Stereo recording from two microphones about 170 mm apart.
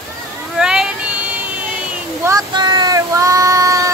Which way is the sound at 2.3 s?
25° right (ahead or behind).